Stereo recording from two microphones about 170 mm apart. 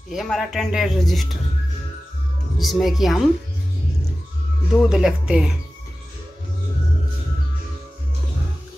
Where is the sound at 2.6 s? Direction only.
Centre (ahead or behind).